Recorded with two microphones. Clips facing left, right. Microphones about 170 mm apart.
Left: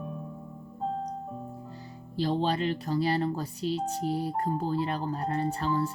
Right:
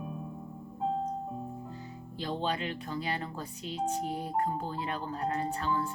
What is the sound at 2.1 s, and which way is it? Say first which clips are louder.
Speech: left 6 dB; 35° left (ahead or behind).